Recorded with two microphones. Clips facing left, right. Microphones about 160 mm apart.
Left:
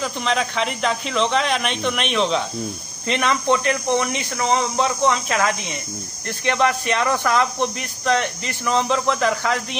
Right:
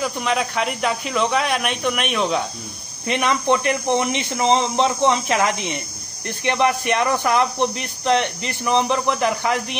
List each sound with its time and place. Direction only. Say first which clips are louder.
0.0 s speech: right 1 dB; 10° right (ahead or behind)